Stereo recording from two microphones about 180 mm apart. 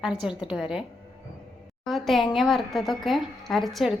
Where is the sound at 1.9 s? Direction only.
Centre (ahead or behind).